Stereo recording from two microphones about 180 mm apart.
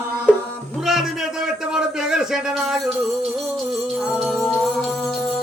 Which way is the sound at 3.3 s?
Centre (ahead or behind).